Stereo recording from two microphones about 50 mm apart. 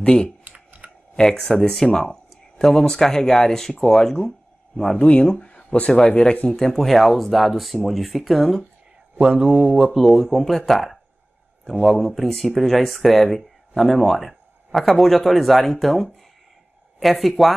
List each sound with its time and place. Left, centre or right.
0.0 s speech: centre
0.4 s computer keyboard: right
1.1 s speech: centre
4.9 s speech: left; by 8.6 s centre
9.3 s mantra: centre
9.9 s speech: centre